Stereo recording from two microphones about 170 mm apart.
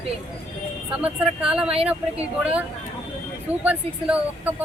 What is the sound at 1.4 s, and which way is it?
A woman's voice, 5° right (ahead or behind).